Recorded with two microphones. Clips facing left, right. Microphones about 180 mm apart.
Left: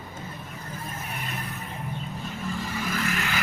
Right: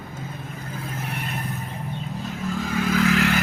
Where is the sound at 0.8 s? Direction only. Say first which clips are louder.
Right 5 dB; 65° right (ahead or behind).